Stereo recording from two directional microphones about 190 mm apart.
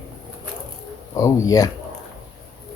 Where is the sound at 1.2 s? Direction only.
20° left (ahead or behind).